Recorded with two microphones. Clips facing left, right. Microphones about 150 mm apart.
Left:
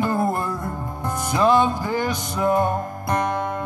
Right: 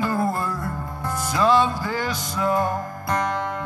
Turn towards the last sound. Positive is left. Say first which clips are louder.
# left 2 dB
turn(degrees=20)  # may be behind; listen again after turning